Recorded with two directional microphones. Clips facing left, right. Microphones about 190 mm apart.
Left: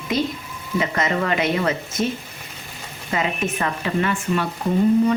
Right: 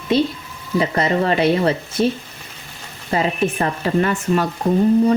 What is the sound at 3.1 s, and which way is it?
Speech, 35° right (ahead or behind).